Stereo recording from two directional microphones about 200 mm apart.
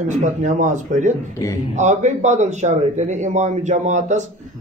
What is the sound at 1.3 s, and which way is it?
Speech, 15° left (ahead or behind).